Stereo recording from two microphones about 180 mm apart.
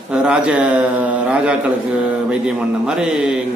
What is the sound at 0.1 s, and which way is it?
A man's voice, 5° right (ahead or behind).